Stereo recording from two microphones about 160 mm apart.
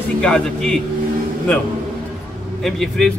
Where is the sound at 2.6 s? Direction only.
Centre (ahead or behind).